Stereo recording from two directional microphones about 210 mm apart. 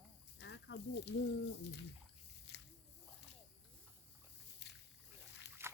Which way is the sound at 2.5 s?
55° left (ahead or behind).